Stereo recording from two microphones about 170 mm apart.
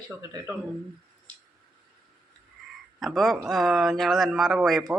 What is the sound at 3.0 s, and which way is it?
Speech, centre (ahead or behind).